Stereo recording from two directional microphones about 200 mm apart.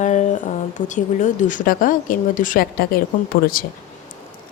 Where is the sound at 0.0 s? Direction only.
35° left (ahead or behind).